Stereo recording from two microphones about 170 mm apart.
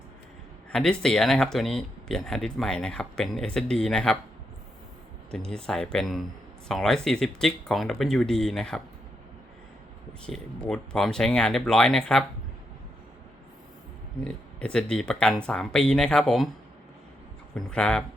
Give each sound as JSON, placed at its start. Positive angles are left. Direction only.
{"t": 0.7, "sound": "speech", "side_deg": 5}
{"t": 5.3, "sound": "speech", "side_deg": 5}
{"t": 10.2, "sound": "speech", "side_deg": 5}
{"t": 14.3, "sound": "speech", "side_deg": 5}
{"t": 17.5, "sound": "speech", "side_deg": 5}